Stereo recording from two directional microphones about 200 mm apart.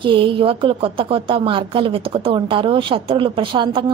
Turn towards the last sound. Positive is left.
turn(degrees=-25)  # may be behind; listen again after turning